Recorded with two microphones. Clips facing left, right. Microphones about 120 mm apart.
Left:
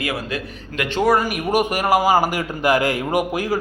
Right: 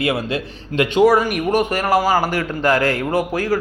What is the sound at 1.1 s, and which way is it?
Speech, centre (ahead or behind).